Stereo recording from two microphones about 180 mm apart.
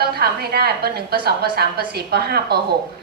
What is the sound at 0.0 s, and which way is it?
A woman's voice, 60° right (ahead or behind).